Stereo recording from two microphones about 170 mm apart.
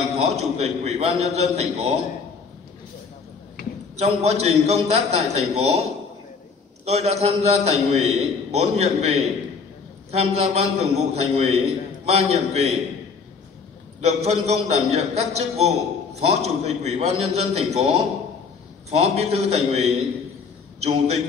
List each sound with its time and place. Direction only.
0.1 s a man's voice: 40° right (ahead or behind)
3.9 s a man's voice: 40° right (ahead or behind)
14.0 s a man's voice: 40° right (ahead or behind)